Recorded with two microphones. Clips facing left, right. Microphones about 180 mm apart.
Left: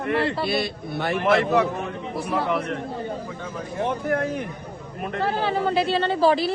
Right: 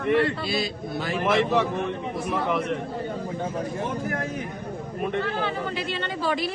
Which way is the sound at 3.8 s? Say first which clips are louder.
Left 5 dB; 60° left (ahead or behind).